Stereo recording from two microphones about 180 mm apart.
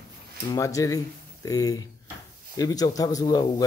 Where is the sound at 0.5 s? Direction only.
20° left (ahead or behind).